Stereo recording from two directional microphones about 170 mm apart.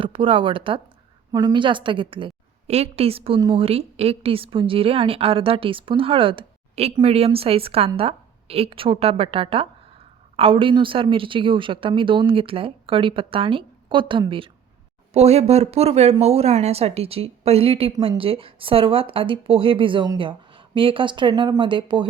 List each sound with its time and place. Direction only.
0.0 s a woman's voice: 30° right (ahead or behind)